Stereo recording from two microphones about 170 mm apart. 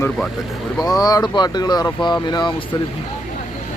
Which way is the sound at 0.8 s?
20° left (ahead or behind).